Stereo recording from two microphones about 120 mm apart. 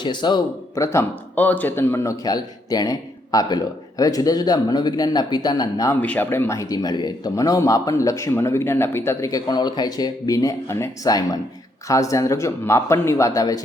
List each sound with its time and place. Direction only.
0.0 s a man's voice: 40° left (ahead or behind)
0.8 s speech: 20° left (ahead or behind)
2.2 s a man's voice: 35° left (ahead or behind)
6.0 s speech: 15° left (ahead or behind)
9.3 s a man's voice: 35° left (ahead or behind)